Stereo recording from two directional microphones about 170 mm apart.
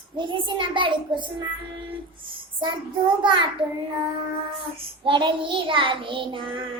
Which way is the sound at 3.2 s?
30° right (ahead or behind).